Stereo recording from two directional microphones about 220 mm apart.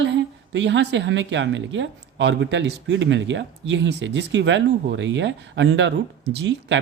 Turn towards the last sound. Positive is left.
turn(degrees=-55)  # may be behind; listen again after turning